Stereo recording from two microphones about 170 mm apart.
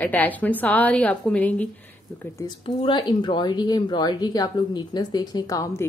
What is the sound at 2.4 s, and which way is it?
Speech, 25° left (ahead or behind).